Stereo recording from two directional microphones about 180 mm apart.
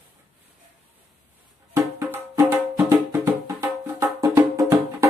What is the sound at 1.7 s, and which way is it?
Music, 15° right (ahead or behind).